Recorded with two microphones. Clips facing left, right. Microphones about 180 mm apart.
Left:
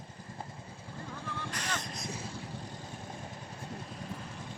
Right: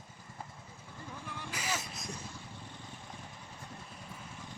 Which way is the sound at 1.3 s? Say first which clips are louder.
Even; 5° right (ahead or behind).